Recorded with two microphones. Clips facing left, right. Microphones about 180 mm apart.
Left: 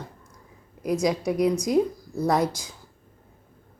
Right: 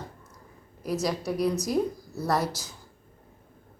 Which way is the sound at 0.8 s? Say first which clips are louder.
Left 5 dB; 15° left (ahead or behind).